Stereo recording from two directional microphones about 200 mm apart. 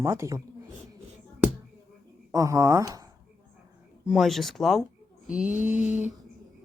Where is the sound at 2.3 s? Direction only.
15° right (ahead or behind).